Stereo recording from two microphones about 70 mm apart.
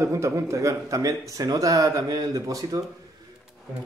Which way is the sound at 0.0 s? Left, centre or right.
Right.